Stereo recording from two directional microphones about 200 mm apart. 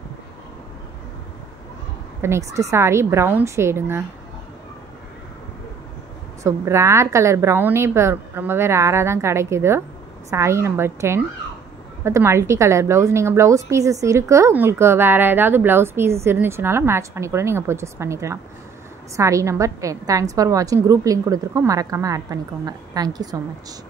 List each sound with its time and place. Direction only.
2.2 s a woman's voice: 15° right (ahead or behind)
6.4 s a woman's voice: 15° right (ahead or behind)